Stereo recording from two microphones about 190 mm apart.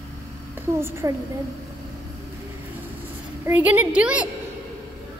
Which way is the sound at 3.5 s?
10° right (ahead or behind).